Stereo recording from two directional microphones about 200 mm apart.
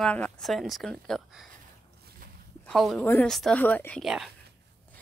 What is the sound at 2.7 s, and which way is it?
Speech, 5° left (ahead or behind).